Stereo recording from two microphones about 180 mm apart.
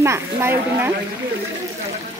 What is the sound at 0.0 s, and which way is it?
Speech, 15° right (ahead or behind).